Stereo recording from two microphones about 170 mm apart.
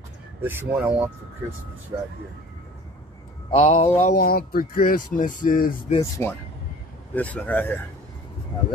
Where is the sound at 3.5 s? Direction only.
40° left (ahead or behind).